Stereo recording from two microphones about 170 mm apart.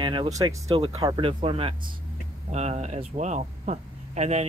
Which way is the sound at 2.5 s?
40° right (ahead or behind).